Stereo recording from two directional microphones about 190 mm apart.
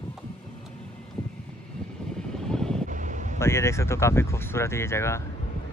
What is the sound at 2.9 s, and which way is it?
Wind noise, 40° right (ahead or behind).